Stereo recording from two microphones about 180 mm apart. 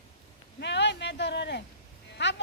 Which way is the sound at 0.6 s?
70° left (ahead or behind).